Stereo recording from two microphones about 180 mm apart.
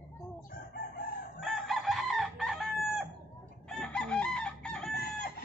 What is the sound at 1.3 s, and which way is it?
Chicken, centre (ahead or behind).